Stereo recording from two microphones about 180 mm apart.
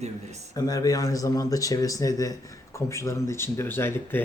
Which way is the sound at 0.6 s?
20° left (ahead or behind).